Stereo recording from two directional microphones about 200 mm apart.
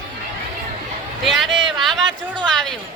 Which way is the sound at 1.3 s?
Centre (ahead or behind).